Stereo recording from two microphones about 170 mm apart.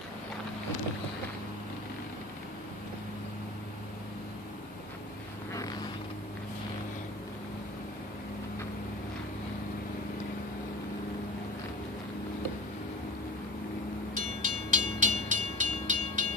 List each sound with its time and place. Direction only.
14.1 s train: 50° right (ahead or behind)